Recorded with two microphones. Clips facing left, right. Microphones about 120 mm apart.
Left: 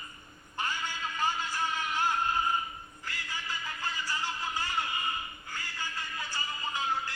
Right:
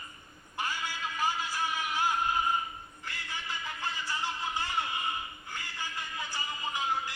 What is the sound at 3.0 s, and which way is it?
Music, 20° right (ahead or behind).